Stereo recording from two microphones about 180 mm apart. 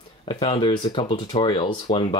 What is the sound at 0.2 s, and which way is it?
Speech, 30° left (ahead or behind).